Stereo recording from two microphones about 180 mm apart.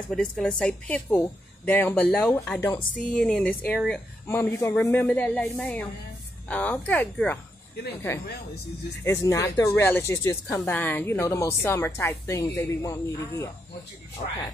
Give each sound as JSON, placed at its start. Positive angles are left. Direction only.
{"t": 0.1, "sound": "a woman's voice", "side_deg": 5}
{"t": 9.0, "sound": "a woman's voice", "side_deg": 15}